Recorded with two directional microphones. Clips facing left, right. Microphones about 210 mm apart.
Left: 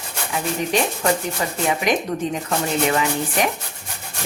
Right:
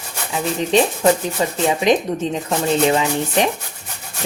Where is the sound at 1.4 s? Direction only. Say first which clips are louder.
Right 4 dB; 25° right (ahead or behind).